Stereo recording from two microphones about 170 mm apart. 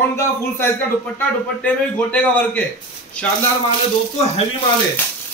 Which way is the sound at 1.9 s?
10° left (ahead or behind).